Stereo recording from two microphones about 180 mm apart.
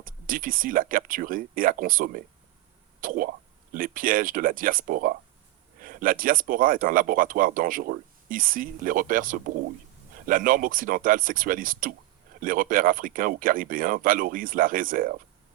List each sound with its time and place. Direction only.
0.0 s speech: 50° right (ahead or behind)